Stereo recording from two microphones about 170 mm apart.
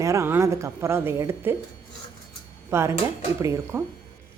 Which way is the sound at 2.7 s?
15° right (ahead or behind).